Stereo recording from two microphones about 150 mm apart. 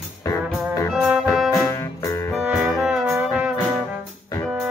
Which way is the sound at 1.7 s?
20° left (ahead or behind).